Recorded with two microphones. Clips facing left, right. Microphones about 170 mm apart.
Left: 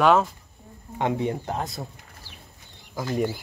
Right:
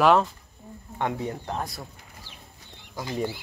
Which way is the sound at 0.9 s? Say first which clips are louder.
Left 4 dB; 20° left (ahead or behind).